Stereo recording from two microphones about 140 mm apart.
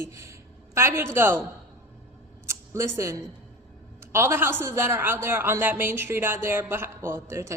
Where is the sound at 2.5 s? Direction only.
20° right (ahead or behind).